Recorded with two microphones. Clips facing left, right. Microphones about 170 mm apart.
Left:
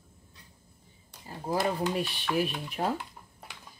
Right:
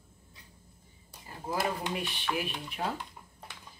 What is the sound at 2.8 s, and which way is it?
Speech, 35° left (ahead or behind).